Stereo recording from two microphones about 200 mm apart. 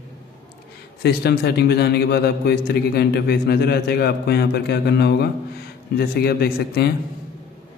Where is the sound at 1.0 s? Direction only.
55° left (ahead or behind).